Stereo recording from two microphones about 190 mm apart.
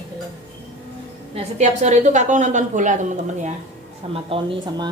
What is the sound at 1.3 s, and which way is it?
A woman's voice, 35° right (ahead or behind).